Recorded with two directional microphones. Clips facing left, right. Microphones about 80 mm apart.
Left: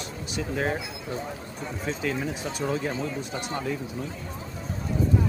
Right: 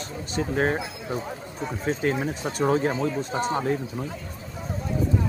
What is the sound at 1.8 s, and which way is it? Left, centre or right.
Speech, right.